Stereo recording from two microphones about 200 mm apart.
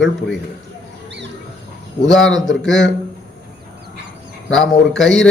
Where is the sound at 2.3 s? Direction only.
70° left (ahead or behind).